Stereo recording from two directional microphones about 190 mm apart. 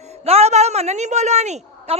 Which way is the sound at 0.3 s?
35° right (ahead or behind).